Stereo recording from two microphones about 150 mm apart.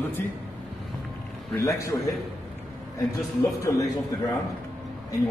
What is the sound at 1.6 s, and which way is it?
Speech, 20° left (ahead or behind).